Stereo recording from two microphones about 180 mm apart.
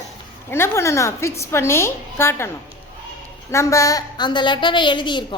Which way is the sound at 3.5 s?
15° left (ahead or behind).